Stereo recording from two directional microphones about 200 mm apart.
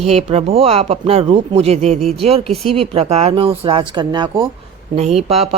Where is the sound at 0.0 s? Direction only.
30° right (ahead or behind).